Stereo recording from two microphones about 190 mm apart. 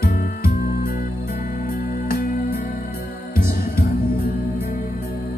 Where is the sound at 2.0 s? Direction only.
50° left (ahead or behind).